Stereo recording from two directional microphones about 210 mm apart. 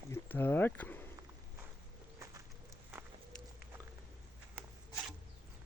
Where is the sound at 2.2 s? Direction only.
15° right (ahead or behind).